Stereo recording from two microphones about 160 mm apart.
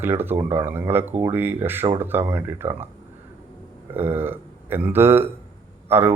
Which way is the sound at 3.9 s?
15° right (ahead or behind).